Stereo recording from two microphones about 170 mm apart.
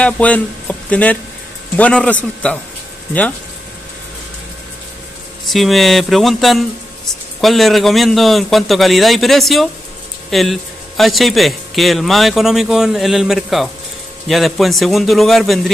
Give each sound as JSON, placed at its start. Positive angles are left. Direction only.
{"t": 0.0, "sound": "a man's voice", "side_deg": 10}
{"t": 5.5, "sound": "a man's voice", "side_deg": 0}